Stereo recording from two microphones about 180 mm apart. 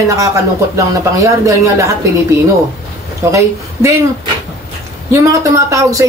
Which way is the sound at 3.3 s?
15° right (ahead or behind).